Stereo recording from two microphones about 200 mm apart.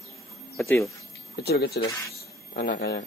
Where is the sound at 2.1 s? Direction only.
50° left (ahead or behind).